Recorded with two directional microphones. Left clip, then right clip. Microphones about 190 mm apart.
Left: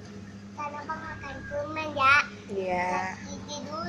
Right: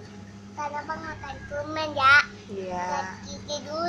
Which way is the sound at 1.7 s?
20° right (ahead or behind).